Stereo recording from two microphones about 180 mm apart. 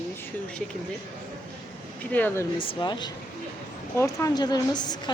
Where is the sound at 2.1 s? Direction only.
10° left (ahead or behind).